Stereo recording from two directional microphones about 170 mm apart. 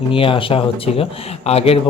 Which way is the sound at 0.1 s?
30° left (ahead or behind).